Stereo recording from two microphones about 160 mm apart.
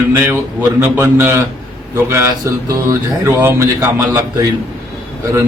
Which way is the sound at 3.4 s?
15° right (ahead or behind).